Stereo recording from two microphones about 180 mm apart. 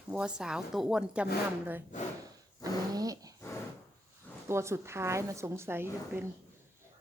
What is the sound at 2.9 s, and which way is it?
Dog, 20° right (ahead or behind).